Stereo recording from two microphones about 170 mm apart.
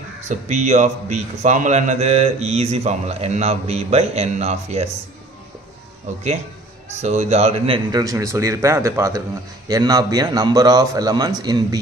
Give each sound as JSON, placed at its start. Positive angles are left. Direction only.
{"t": 0.3, "sound": "a man's voice", "side_deg": -40}
{"t": 7.0, "sound": "a man's voice", "side_deg": -40}
{"t": 8.0, "sound": "speech", "side_deg": -20}